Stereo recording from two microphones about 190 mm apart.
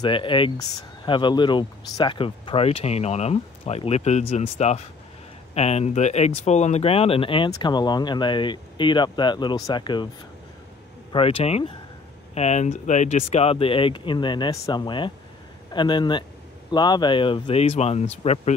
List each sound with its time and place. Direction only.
0.0 s speech: 25° left (ahead or behind)
11.1 s speech: 30° left (ahead or behind)